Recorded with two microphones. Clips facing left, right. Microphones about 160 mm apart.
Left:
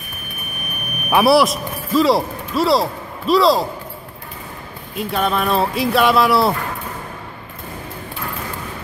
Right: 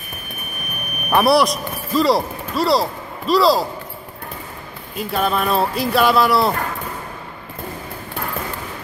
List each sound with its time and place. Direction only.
1.1 s speech: 5° left (ahead or behind)
4.9 s speech: centre (ahead or behind)